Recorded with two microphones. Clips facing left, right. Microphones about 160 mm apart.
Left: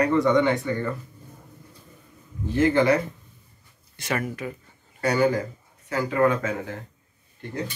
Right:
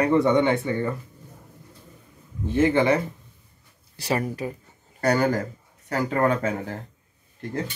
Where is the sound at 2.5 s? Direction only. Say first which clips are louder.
Even; 25° right (ahead or behind).